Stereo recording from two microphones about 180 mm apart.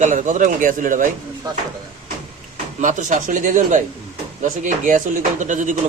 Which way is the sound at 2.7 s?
45° right (ahead or behind).